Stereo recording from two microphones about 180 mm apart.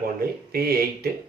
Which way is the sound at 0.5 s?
55° right (ahead or behind).